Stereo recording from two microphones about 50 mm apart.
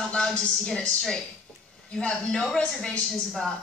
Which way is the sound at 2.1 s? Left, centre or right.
Centre.